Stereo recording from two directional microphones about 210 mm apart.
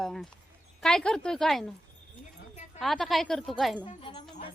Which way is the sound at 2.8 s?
Centre (ahead or behind).